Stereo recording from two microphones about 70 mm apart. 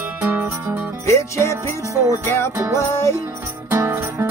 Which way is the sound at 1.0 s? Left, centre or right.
Left.